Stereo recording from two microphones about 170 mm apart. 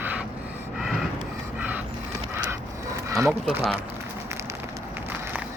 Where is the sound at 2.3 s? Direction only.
15° right (ahead or behind).